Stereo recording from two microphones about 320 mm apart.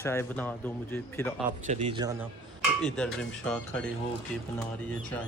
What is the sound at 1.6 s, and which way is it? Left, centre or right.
Speech, centre.